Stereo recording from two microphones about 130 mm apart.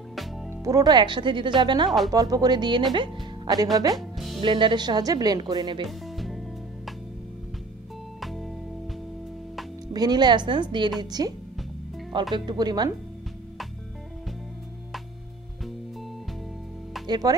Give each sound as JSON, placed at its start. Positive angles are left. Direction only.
{"t": 0.1, "sound": "music", "side_deg": 0}
{"t": 0.5, "sound": "speech", "side_deg": -25}
{"t": 3.9, "sound": "speech", "side_deg": 0}
{"t": 4.4, "sound": "speech", "side_deg": -40}
{"t": 5.9, "sound": "music", "side_deg": 0}
{"t": 8.2, "sound": "music", "side_deg": 0}
{"t": 9.9, "sound": "speech", "side_deg": -35}
{"t": 17.0, "sound": "speech", "side_deg": -30}